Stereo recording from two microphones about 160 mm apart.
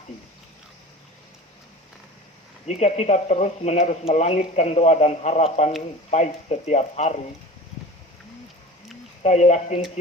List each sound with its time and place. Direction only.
2.6 s speech: 45° left (ahead or behind)
9.2 s speech: 45° left (ahead or behind)